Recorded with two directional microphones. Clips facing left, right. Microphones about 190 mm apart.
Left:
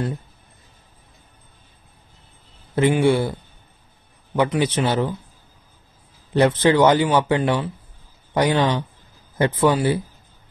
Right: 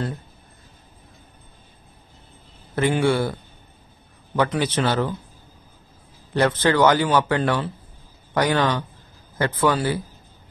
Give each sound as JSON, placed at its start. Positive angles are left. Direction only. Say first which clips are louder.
{"t": 2.7, "sound": "a man's voice", "louder": "left 3 dB", "side_deg": 20}
{"t": 4.4, "sound": "a man's voice", "louder": "left 2 dB", "side_deg": 15}
{"t": 6.3, "sound": "speech", "louder": "left 3 dB", "side_deg": 20}